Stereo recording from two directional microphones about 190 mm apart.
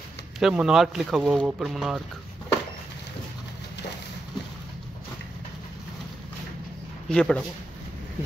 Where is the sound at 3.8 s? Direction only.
65° left (ahead or behind).